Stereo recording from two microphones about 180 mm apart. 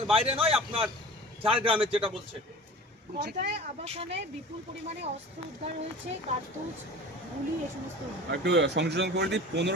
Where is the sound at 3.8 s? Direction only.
35° right (ahead or behind).